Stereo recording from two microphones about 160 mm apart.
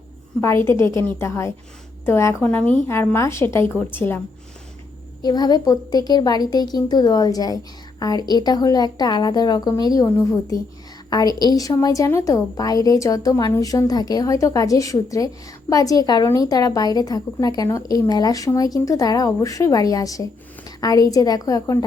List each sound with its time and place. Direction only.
0.4 s a woman's voice: 15° left (ahead or behind)
5.2 s a woman's voice: 25° left (ahead or behind)